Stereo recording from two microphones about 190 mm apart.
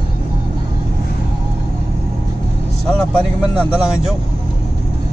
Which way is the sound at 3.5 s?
5° right (ahead or behind).